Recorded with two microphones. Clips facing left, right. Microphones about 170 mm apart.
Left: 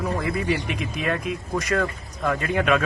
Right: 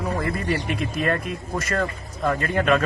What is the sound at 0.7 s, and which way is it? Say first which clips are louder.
Speech: right 3 dB; 50° right (ahead or behind).